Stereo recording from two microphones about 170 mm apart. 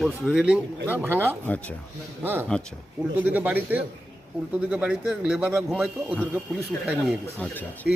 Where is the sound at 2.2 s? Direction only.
10° right (ahead or behind).